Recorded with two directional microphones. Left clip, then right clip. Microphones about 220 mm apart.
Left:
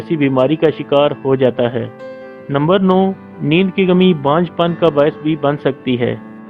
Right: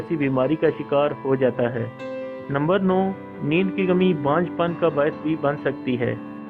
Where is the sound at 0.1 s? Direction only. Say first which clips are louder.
Left 8 dB; 45° left (ahead or behind).